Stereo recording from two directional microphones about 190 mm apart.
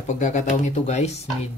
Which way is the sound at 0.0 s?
40° left (ahead or behind).